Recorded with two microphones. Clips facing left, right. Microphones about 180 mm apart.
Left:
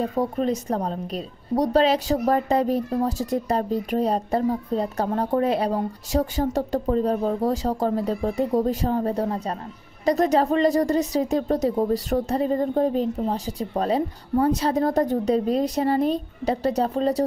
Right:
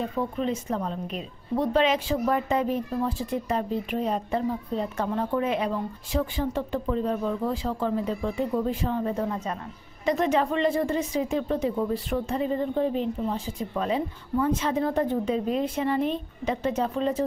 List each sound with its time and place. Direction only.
0.0 s a woman's voice: 40° left (ahead or behind)